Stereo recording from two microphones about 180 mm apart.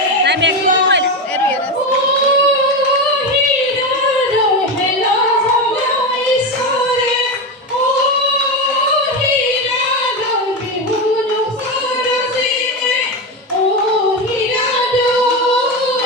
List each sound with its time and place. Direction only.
0.3 s chatter: 85° right